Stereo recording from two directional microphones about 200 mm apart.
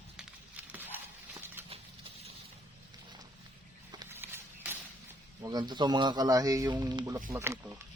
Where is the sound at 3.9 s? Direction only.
15° right (ahead or behind).